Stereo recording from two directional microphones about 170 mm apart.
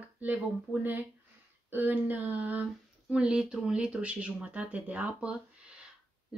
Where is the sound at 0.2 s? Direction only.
10° right (ahead or behind).